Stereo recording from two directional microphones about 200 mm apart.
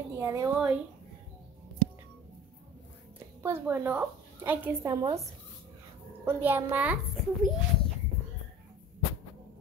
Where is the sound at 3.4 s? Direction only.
10° right (ahead or behind).